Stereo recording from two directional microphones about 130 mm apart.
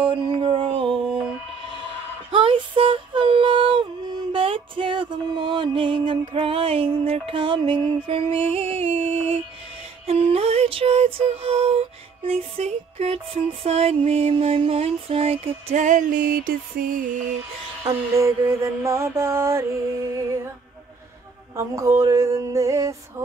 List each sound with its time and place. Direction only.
0.0 s music: 40° right (ahead or behind)
2.3 s a sound: 40° right (ahead or behind)
10.0 s music: 50° right (ahead or behind)
15.7 s music: 75° right (ahead or behind); by 17.0 s 90° right
17.8 s mantra: 20° right (ahead or behind)
21.5 s mantra: 25° right (ahead or behind)